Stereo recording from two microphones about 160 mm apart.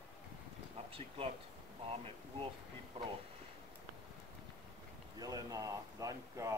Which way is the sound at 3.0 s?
40° right (ahead or behind).